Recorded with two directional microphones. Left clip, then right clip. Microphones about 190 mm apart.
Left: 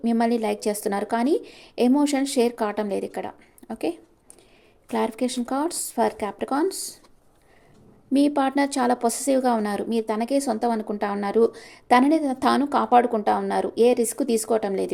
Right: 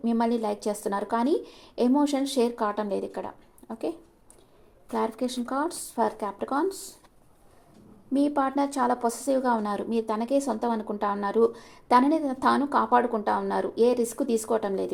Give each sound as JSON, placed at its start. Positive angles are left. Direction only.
{"t": 0.0, "sound": "a woman's voice", "side_deg": 25}
{"t": 8.1, "sound": "a woman's voice", "side_deg": 25}